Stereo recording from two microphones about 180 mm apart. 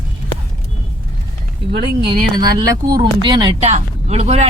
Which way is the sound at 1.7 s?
65° right (ahead or behind).